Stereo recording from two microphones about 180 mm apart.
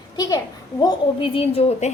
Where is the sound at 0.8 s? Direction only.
25° left (ahead or behind).